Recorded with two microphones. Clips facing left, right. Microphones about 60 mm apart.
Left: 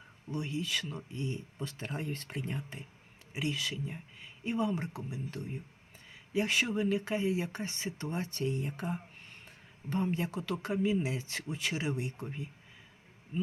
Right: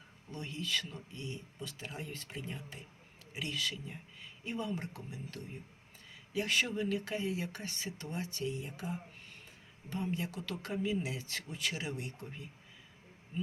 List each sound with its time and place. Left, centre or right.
0.3 s speech: centre
0.9 s speech: left
1.5 s speech: left
3.3 s speech: centre
10.4 s speech: left